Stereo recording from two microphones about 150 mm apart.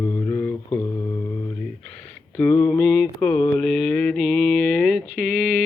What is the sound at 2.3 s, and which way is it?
Mantra, 15° left (ahead or behind).